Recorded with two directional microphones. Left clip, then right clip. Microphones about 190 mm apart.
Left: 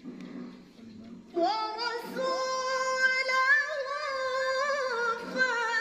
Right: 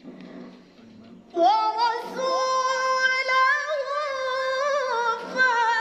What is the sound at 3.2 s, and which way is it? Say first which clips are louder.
Singing: right 4 dB; 10° left (ahead or behind).